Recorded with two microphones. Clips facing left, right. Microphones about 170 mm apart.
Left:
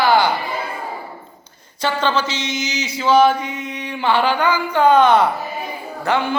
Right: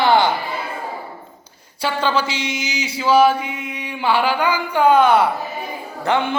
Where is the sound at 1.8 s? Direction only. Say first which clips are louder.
Even; 10° right (ahead or behind).